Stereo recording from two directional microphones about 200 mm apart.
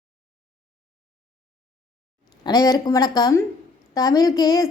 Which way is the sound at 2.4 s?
20° left (ahead or behind).